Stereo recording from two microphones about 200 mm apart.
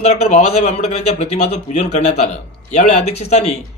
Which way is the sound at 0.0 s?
35° left (ahead or behind).